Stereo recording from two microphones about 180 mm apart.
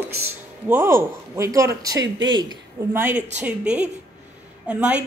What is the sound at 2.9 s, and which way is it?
Speech, 10° right (ahead or behind).